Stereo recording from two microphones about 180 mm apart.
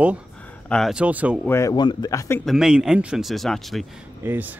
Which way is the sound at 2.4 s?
5° right (ahead or behind).